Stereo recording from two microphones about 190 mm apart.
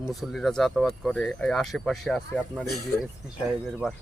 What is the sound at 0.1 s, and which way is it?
Speech, centre (ahead or behind).